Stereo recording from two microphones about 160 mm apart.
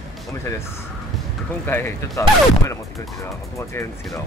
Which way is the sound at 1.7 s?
15° left (ahead or behind).